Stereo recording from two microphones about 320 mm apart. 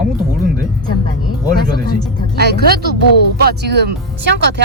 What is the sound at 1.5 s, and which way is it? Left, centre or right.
Speech, right.